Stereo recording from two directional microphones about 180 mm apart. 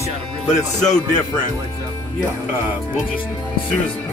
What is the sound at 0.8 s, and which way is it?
Speech, 40° left (ahead or behind).